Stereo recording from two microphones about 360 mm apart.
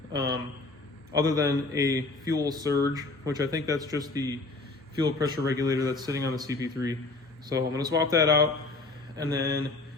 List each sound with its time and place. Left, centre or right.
1.1 s a man's voice: centre
9.4 s speech: right